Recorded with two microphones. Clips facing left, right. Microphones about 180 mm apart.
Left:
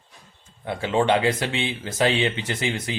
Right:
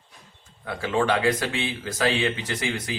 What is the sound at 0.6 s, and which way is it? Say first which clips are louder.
Speech: left 2 dB; 25° left (ahead or behind).